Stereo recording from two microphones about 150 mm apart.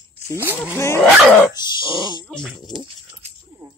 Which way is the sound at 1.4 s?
30° left (ahead or behind).